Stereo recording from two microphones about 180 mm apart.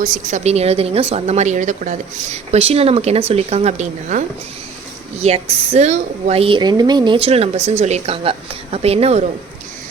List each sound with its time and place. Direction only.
0.0 s a woman's voice: 45° right (ahead or behind)
5.2 s a woman's voice: 35° right (ahead or behind)